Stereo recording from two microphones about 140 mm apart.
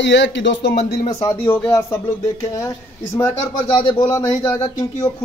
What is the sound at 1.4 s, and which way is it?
Speech, 15° left (ahead or behind).